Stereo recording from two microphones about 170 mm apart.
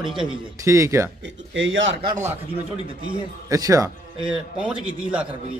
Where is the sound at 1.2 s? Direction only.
90° right.